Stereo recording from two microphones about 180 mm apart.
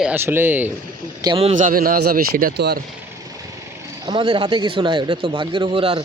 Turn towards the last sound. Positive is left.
turn(degrees=-30)  # may be behind; listen again after turning